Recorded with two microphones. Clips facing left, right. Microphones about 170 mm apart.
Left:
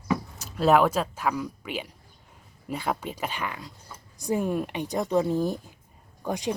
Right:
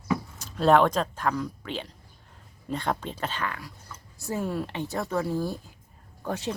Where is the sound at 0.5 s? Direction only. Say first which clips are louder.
Even; 5° left (ahead or behind).